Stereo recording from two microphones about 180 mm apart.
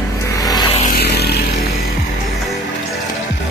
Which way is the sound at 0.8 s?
65° left (ahead or behind).